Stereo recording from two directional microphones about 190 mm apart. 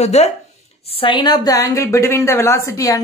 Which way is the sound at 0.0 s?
35° left (ahead or behind).